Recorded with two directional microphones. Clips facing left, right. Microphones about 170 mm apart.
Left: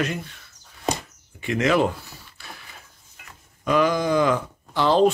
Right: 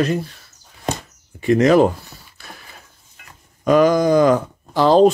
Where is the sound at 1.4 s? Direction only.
40° right (ahead or behind).